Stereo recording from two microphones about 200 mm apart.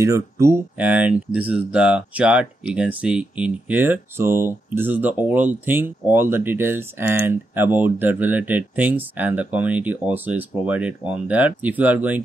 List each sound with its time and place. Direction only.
0.0 s speech: 15° right (ahead or behind)